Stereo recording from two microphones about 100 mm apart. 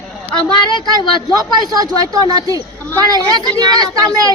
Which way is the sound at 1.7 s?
40° right (ahead or behind).